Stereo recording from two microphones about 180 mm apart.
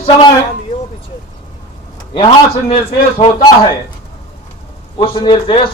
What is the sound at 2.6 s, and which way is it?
Speech, 30° left (ahead or behind).